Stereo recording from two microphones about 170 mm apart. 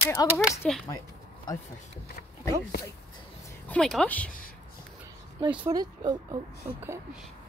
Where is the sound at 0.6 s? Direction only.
5° left (ahead or behind).